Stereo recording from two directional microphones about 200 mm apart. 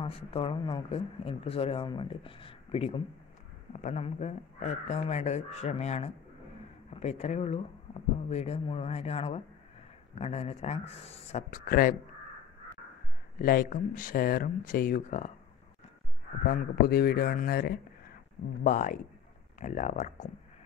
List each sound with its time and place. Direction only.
0.0 s speech: 30° left (ahead or behind); by 11.9 s 45° left (ahead or behind)
13.4 s speech: 45° left (ahead or behind)
16.4 s speech: 50° left (ahead or behind)